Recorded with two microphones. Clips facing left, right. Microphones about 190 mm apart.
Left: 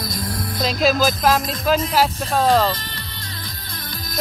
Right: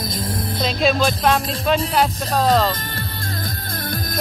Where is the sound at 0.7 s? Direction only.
Centre (ahead or behind).